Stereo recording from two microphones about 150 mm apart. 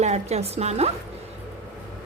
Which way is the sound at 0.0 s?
45° right (ahead or behind).